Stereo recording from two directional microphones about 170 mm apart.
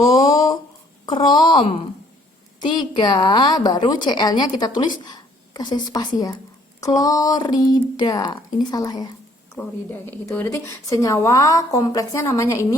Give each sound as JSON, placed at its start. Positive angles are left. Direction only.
{"t": 1.0, "sound": "a woman's voice", "side_deg": 25}